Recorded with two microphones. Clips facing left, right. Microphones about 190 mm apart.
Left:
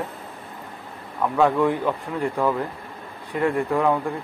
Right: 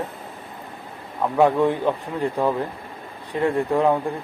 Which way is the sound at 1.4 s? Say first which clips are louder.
Right 2 dB; 25° right (ahead or behind).